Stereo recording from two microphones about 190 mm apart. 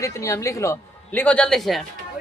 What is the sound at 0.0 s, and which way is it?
Speech, 15° left (ahead or behind).